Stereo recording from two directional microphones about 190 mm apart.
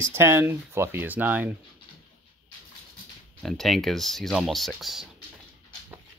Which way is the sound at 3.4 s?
Centre (ahead or behind).